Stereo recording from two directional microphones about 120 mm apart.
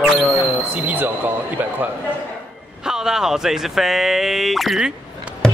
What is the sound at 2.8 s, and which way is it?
Speech, 5° right (ahead or behind).